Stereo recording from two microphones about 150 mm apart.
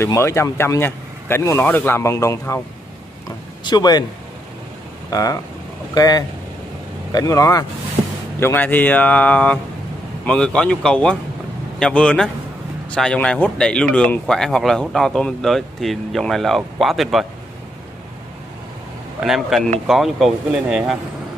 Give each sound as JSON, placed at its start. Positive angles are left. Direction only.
{"t": 0.0, "sound": "a man's voice", "side_deg": 20}
{"t": 3.6, "sound": "a man's voice", "side_deg": 30}
{"t": 5.1, "sound": "a man's voice", "side_deg": 25}
{"t": 19.2, "sound": "speech", "side_deg": 0}